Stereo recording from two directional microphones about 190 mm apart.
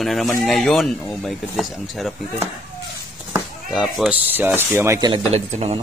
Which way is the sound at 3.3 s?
10° right (ahead or behind).